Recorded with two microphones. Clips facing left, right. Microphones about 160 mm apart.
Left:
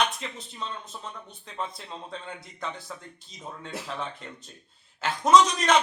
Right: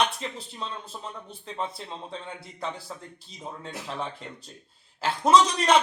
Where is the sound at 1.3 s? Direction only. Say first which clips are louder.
Right 3 dB; 30° right (ahead or behind).